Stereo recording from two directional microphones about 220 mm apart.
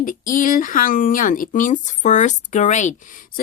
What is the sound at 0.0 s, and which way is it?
Speech, 40° left (ahead or behind).